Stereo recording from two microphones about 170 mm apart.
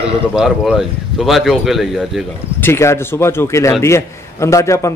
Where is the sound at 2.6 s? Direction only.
15° left (ahead or behind).